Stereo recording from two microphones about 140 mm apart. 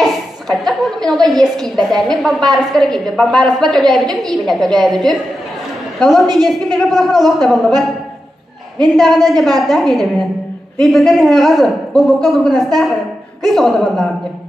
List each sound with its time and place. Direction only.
0.0 s a woman's voice: centre (ahead or behind)
8.8 s a woman's voice: centre (ahead or behind)